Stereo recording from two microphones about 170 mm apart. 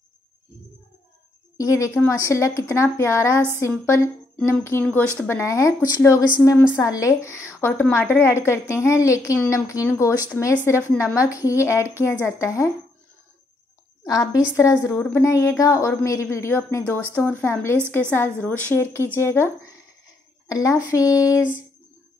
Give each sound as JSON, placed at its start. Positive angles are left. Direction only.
{"t": 1.6, "sound": "a woman's voice", "side_deg": 15}
{"t": 14.0, "sound": "a woman's voice", "side_deg": 20}
{"t": 21.4, "sound": "speech", "side_deg": -10}